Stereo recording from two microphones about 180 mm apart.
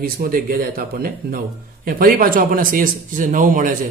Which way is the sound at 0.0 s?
50° right (ahead or behind).